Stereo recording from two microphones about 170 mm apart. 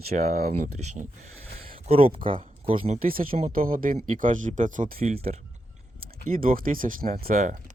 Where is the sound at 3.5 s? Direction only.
55° right (ahead or behind).